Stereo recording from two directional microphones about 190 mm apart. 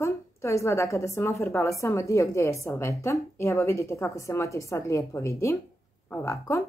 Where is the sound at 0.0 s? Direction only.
15° left (ahead or behind).